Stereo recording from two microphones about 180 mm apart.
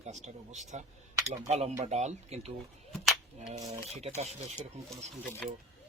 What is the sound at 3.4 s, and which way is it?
Speech, 35° right (ahead or behind).